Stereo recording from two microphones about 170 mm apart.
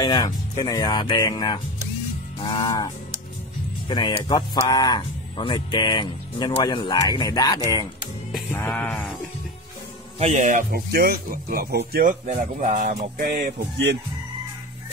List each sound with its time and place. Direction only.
0.0 s speech: 25° left (ahead or behind)
8.5 s music: 10° left (ahead or behind)
10.1 s speech: 40° right (ahead or behind); by 13.9 s 65° right (ahead or behind)